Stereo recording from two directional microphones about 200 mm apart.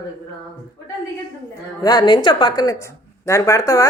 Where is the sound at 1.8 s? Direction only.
20° left (ahead or behind).